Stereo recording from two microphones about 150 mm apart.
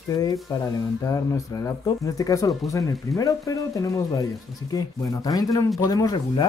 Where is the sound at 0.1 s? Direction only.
25° left (ahead or behind).